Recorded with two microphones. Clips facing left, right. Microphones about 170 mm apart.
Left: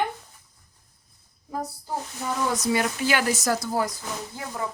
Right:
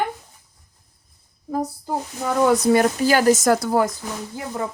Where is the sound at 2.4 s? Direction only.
55° right (ahead or behind).